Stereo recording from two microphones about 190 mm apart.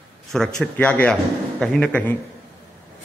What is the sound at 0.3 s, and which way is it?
A man's voice, centre (ahead or behind).